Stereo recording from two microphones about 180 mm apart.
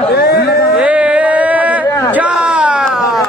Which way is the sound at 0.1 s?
60° left (ahead or behind).